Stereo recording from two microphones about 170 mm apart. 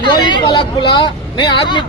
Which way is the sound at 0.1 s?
25° left (ahead or behind).